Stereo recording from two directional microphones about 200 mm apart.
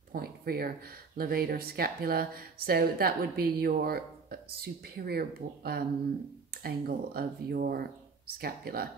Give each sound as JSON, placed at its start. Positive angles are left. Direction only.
{"t": 0.1, "sound": "speech", "side_deg": -50}